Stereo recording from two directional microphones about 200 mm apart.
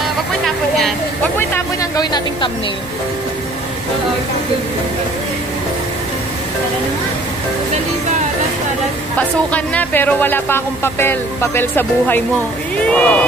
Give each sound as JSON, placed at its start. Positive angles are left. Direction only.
{"t": 1.5, "sound": "music", "side_deg": 20}
{"t": 9.5, "sound": "speech", "side_deg": 5}